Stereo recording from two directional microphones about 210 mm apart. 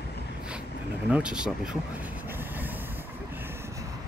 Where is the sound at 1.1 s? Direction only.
5° right (ahead or behind).